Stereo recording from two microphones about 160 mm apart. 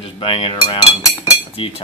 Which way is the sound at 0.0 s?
35° left (ahead or behind).